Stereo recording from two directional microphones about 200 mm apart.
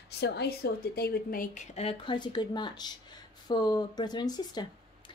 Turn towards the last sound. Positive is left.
turn(degrees=20)  # may be behind; listen again after turning